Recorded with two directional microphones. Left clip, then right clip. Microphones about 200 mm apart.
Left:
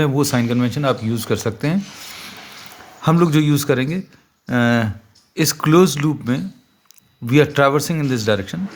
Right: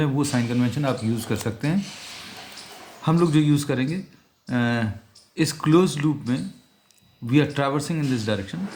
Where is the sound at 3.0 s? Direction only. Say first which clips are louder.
Left 5 dB; 50° left (ahead or behind).